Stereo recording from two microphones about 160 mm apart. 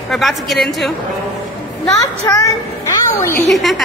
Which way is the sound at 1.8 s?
20° left (ahead or behind).